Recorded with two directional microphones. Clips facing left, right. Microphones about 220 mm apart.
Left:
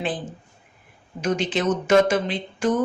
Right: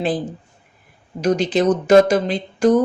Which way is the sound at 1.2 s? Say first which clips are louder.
Right 6 dB; 40° right (ahead or behind).